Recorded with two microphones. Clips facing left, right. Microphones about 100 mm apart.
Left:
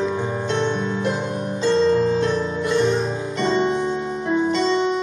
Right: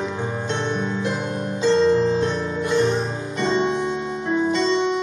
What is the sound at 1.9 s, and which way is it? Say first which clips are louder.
Music: even; 20° right (ahead or behind).